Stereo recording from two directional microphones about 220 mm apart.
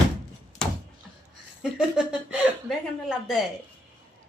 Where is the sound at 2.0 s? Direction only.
5° right (ahead or behind).